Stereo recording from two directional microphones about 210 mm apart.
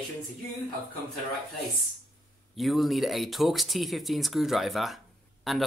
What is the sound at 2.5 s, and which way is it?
Speech, centre (ahead or behind).